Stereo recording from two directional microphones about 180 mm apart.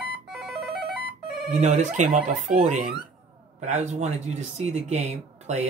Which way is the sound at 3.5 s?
40° right (ahead or behind).